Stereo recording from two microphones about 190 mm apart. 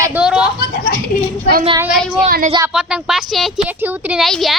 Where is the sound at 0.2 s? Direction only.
5° right (ahead or behind).